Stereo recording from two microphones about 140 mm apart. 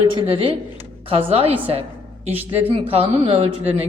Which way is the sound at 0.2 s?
40° right (ahead or behind).